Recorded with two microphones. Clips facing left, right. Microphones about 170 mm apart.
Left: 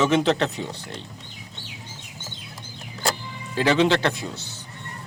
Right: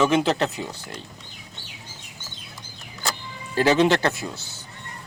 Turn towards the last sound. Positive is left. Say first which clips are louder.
# even
turn(degrees=0)  # may be behind; listen again after turning